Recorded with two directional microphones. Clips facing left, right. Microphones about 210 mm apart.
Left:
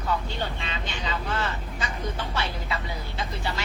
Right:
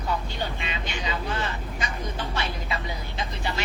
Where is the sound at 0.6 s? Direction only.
15° right (ahead or behind).